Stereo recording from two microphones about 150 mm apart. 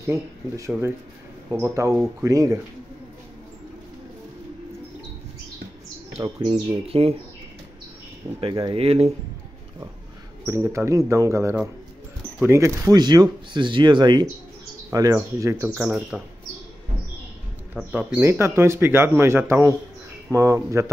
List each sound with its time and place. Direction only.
0.0 s speech: 20° right (ahead or behind)
6.1 s speech: 40° right (ahead or behind)
8.4 s speech: 35° right (ahead or behind)
10.4 s speech: 20° right (ahead or behind)
17.7 s speech: 10° right (ahead or behind)